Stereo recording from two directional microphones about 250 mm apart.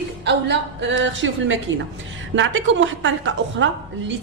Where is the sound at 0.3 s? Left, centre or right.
Right.